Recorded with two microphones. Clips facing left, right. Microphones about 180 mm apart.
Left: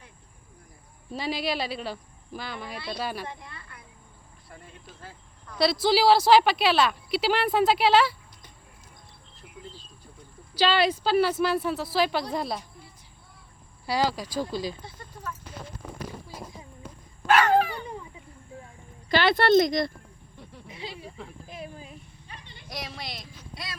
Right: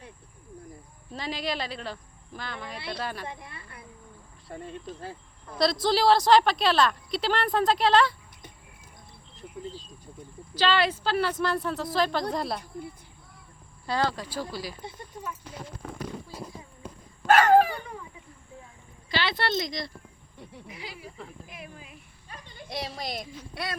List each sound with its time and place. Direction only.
1.1 s a woman's voice: 10° left (ahead or behind)
3.2 s a sound: 25° right (ahead or behind)
4.5 s speech: 30° right (ahead or behind)
5.5 s a woman's voice: 5° left (ahead or behind)
10.5 s a woman's voice: 10° left (ahead or behind)
13.8 s a woman's voice: 10° left (ahead or behind)
14.8 s speech: 15° right (ahead or behind)
17.2 s dog: 45° right (ahead or behind)
19.1 s speech: 50° left (ahead or behind)
20.7 s speech: 25° left (ahead or behind)
22.3 s a sound: 45° right (ahead or behind)
23.0 s speech: 50° right (ahead or behind)